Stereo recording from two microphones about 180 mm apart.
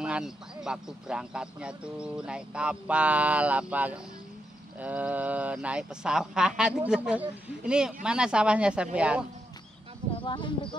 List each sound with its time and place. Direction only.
0.0 s speech: 5° right (ahead or behind)
10.1 s speech: 25° left (ahead or behind)